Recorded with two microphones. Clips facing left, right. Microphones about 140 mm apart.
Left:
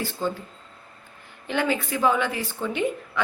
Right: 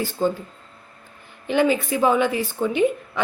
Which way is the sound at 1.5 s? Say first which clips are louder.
Right 6 dB; 15° right (ahead or behind).